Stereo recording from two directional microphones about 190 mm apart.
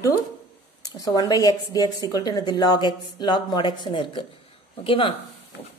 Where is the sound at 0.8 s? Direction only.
20° left (ahead or behind).